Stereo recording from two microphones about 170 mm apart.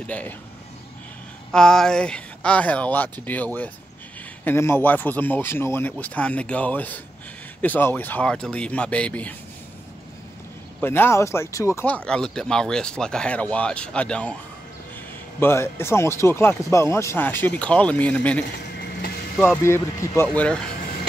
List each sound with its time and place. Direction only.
0.0 s speech: 10° left (ahead or behind)
1.5 s speech: 5° left (ahead or behind)
10.8 s speech: 15° left (ahead or behind)
15.4 s speech: 15° left (ahead or behind)
18.8 s vehicle: 70° left (ahead or behind)
19.3 s speech: 5° left (ahead or behind)
19.6 s speech: 15° left (ahead or behind)